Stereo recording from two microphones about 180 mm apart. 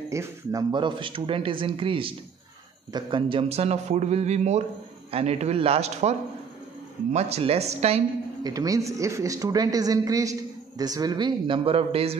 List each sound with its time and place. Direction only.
0.1 s a man's voice: 15° right (ahead or behind); by 8.0 s 35° right (ahead or behind)
8.5 s speech: 20° right (ahead or behind)